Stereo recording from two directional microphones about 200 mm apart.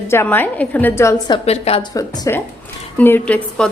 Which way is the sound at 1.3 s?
30° left (ahead or behind).